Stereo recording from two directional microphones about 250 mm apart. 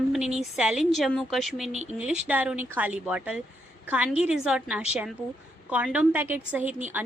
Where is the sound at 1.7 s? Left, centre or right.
Right.